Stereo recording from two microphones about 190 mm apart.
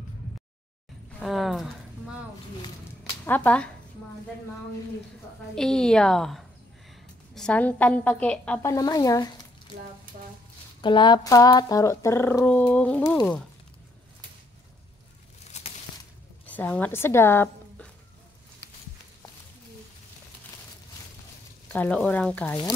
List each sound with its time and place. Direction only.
1.2 s speech: centre (ahead or behind)
3.3 s speech: 10° left (ahead or behind)
5.5 s a woman's voice: 5° left (ahead or behind)
8.7 s speech: 20° left (ahead or behind)
10.8 s speech: 25° left (ahead or behind); by 13.0 s 5° left (ahead or behind)
15.5 s a sound: 35° left (ahead or behind)
16.4 s speech: 10° left (ahead or behind)
21.6 s speech: 10° left (ahead or behind)